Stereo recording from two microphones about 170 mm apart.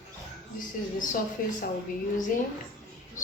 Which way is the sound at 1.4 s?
50° left (ahead or behind).